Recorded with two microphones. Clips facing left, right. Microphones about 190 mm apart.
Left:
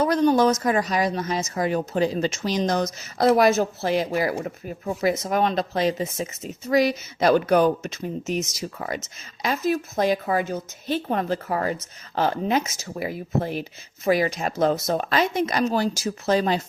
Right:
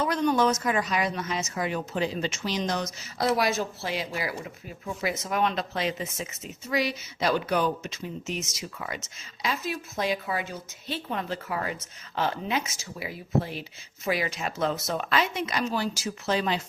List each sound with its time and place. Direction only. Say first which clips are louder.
0.0 s a woman's voice: left 5 dB; 35° left (ahead or behind)